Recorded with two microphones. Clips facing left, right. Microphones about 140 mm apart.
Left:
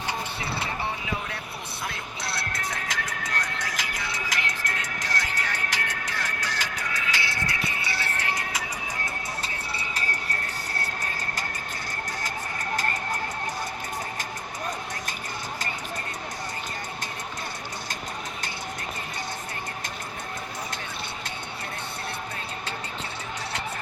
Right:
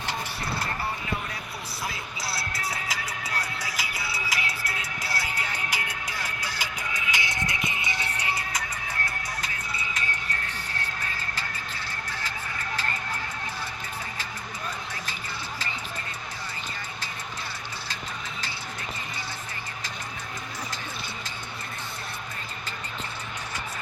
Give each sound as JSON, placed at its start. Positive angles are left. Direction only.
{"t": 1.9, "sound": "music", "side_deg": -5}
{"t": 9.0, "sound": "music", "side_deg": 30}